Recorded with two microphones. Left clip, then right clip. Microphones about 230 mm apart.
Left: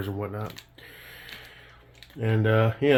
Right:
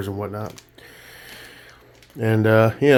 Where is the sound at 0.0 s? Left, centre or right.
Right.